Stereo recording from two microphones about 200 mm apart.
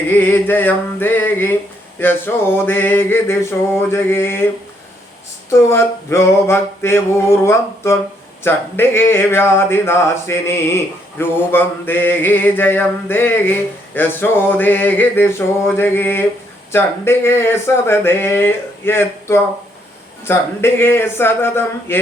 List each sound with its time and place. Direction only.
0.1 s mantra: 10° left (ahead or behind)
5.5 s mantra: 15° left (ahead or behind)